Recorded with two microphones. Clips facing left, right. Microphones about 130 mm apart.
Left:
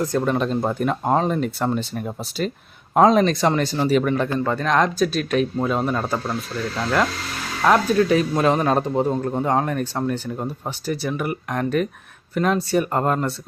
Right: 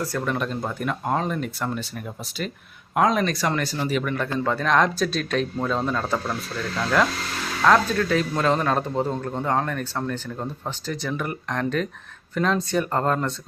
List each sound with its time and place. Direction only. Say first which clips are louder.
0.0 s speech: left 5 dB; 20° left (ahead or behind)
2.9 s speech: left 6 dB; 30° left (ahead or behind)
4.4 s speech: right 2 dB; centre (ahead or behind)
7.6 s a man's voice: left 2 dB; 15° left (ahead or behind)